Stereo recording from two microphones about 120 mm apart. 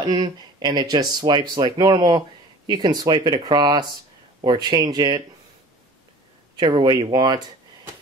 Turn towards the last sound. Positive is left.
turn(degrees=-35)  # may be behind; listen again after turning